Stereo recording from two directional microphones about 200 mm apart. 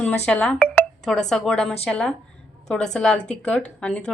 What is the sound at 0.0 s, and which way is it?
A woman's voice, 5° left (ahead or behind).